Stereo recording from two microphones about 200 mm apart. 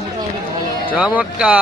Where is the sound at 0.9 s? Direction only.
5° right (ahead or behind).